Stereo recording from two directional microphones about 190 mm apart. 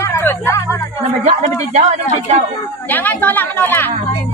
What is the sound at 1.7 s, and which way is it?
Speech, 40° right (ahead or behind).